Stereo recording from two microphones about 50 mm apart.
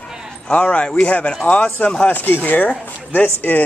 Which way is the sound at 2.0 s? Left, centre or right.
Left.